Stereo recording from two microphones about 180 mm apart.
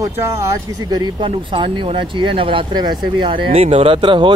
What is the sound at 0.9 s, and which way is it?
Speech, 25° right (ahead or behind).